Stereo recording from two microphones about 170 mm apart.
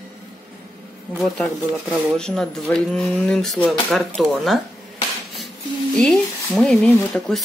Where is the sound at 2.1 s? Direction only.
5° left (ahead or behind).